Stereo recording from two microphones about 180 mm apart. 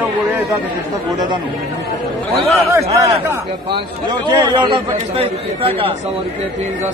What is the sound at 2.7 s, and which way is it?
Speech, 15° right (ahead or behind).